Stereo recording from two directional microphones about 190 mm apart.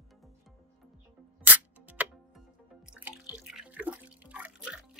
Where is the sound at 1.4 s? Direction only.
10° right (ahead or behind).